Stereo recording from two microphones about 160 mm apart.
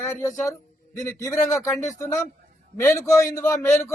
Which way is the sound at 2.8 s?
15° left (ahead or behind).